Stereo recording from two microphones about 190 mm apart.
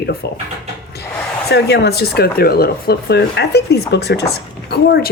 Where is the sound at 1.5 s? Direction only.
60° left (ahead or behind).